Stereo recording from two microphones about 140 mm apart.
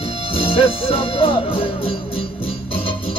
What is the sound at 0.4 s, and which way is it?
Music, 40° left (ahead or behind).